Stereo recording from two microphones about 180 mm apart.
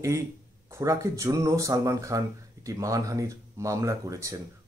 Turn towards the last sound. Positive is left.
turn(degrees=-15)  # may be behind; listen again after turning